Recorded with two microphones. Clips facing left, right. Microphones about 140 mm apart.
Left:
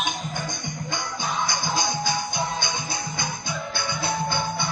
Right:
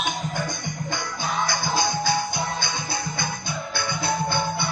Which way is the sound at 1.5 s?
20° left (ahead or behind).